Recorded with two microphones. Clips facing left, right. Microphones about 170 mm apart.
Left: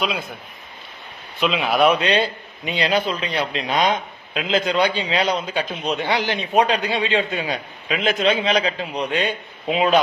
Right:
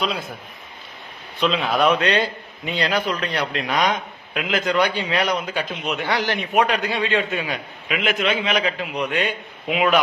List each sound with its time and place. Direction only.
0.0 s speech: centre (ahead or behind)
1.6 s speech: 5° left (ahead or behind)
2.1 s a man's voice: 25° left (ahead or behind)
2.7 s a man's voice: 15° left (ahead or behind)